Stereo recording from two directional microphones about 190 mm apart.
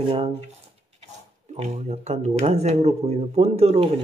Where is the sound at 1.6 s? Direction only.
35° right (ahead or behind).